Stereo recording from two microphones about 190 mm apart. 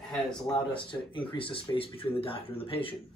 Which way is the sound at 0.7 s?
25° left (ahead or behind).